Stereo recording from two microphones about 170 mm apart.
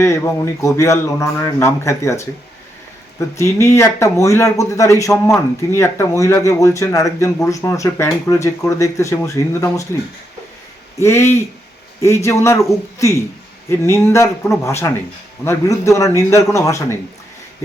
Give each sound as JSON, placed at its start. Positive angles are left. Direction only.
{"t": 0.0, "sound": "speech", "side_deg": 15}
{"t": 11.0, "sound": "speech", "side_deg": 15}